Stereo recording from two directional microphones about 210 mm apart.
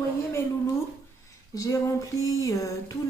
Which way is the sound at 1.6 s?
15° left (ahead or behind).